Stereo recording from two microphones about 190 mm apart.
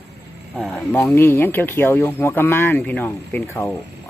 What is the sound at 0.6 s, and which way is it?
Speech, centre (ahead or behind).